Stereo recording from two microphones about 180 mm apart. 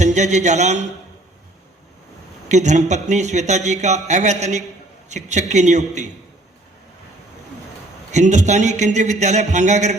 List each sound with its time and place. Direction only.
0.0 s speech: 40° right (ahead or behind)
2.5 s speech: 40° right (ahead or behind)
8.1 s speech: 40° right (ahead or behind)